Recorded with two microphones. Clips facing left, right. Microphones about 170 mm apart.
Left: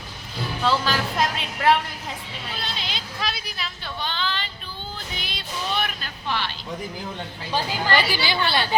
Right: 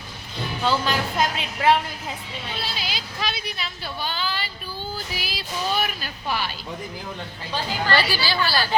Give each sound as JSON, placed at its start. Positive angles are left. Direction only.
{"t": 0.6, "sound": "speech", "side_deg": 0}
{"t": 7.9, "sound": "a woman's voice", "side_deg": 15}